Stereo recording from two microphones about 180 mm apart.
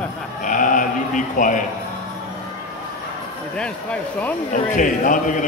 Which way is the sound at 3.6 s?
5° left (ahead or behind).